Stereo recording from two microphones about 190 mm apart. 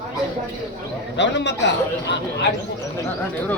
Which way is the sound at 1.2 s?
70° left (ahead or behind).